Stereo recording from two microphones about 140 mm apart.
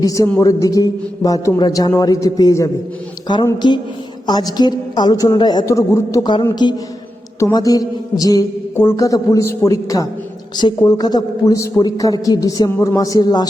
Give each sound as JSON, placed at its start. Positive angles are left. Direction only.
{"t": 0.0, "sound": "a woman's voice", "side_deg": 25}